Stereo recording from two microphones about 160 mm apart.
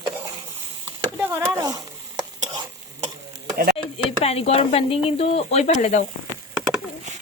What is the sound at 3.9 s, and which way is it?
Speech, 40° left (ahead or behind).